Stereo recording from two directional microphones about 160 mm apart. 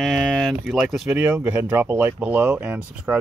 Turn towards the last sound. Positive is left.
turn(degrees=-10)  # may be behind; listen again after turning